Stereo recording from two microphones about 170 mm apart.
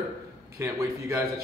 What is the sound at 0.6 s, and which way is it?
Speech, 15° right (ahead or behind).